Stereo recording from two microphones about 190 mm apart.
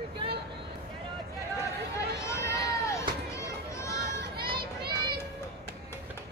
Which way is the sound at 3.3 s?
15° left (ahead or behind).